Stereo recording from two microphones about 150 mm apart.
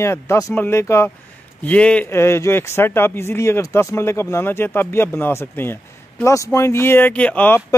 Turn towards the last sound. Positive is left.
turn(degrees=10)  # may be behind; listen again after turning